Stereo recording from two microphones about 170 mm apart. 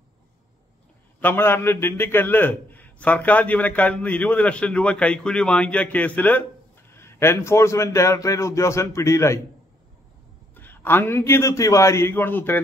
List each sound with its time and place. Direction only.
1.2 s a man's voice: 15° left (ahead or behind)
10.5 s a man's voice: 10° left (ahead or behind)